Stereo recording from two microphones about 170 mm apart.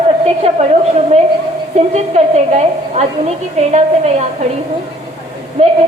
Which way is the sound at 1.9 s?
40° right (ahead or behind).